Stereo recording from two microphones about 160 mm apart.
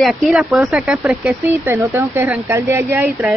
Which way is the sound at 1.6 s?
15° right (ahead or behind).